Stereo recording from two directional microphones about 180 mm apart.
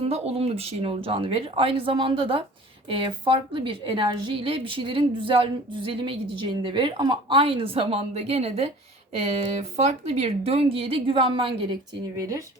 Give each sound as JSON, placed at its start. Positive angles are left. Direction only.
{"t": 0.0, "sound": "a woman's voice", "side_deg": -35}
{"t": 12.1, "sound": "speech", "side_deg": -20}